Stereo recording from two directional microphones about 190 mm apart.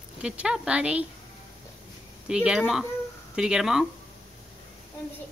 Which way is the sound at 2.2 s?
5° right (ahead or behind).